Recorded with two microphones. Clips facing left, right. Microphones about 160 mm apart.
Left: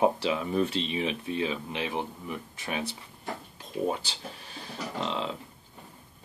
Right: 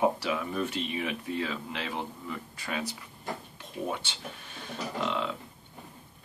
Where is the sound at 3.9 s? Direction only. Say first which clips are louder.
Left 3 dB; 35° left (ahead or behind).